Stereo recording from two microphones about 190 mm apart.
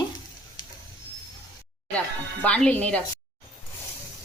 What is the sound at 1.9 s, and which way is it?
Speech, 5° left (ahead or behind).